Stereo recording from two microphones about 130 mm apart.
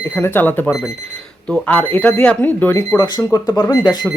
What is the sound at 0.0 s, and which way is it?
Speech, 15° left (ahead or behind).